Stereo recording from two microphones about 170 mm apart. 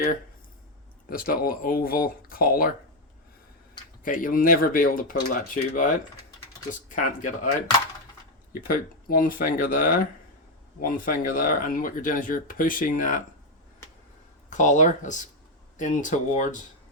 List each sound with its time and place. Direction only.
1.1 s speech: 60° left (ahead or behind)
4.0 s speech: 55° left (ahead or behind)
8.6 s speech: 55° left (ahead or behind)
14.5 s speech: 45° left (ahead or behind)